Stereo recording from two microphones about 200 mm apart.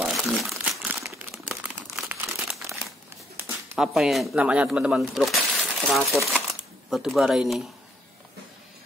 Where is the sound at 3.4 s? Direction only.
5° right (ahead or behind).